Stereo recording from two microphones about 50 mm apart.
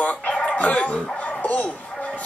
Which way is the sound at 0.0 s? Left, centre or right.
Left.